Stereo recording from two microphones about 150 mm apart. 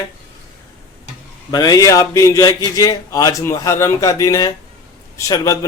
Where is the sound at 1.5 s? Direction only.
25° left (ahead or behind).